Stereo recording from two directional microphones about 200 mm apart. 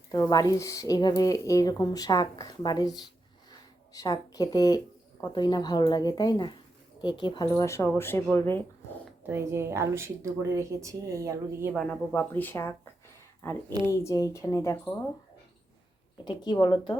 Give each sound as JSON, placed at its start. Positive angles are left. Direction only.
{"t": 0.1, "sound": "speech", "side_deg": 20}
{"t": 3.9, "sound": "speech", "side_deg": 20}
{"t": 9.2, "sound": "speech", "side_deg": -10}
{"t": 11.7, "sound": "speech", "side_deg": 5}
{"t": 14.0, "sound": "speech", "side_deg": 15}
{"t": 16.2, "sound": "speech", "side_deg": 20}